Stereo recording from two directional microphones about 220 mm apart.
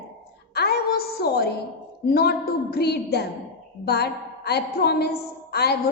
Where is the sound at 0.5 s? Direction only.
45° left (ahead or behind).